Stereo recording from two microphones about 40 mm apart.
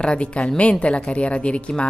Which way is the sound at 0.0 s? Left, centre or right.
Left.